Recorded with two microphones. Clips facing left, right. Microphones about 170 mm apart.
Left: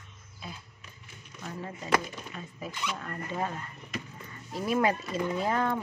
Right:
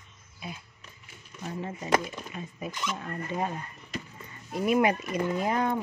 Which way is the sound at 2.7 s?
45° right (ahead or behind).